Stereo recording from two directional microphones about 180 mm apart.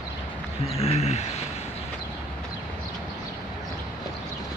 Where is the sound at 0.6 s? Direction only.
35° left (ahead or behind).